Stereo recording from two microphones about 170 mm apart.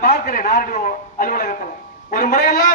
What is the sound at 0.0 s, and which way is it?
A man's voice, 55° left (ahead or behind).